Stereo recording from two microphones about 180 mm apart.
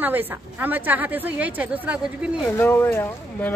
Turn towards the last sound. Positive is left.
turn(degrees=10)  # may be behind; listen again after turning